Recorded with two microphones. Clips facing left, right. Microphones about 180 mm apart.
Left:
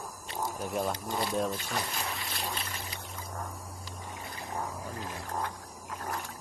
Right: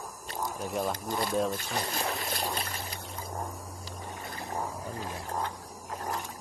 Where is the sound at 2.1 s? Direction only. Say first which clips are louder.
Right 4 dB; 45° right (ahead or behind).